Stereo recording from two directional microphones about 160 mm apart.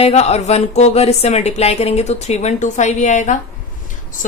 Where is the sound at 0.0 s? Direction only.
40° left (ahead or behind).